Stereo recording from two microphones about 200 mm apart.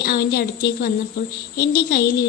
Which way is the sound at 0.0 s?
50° left (ahead or behind).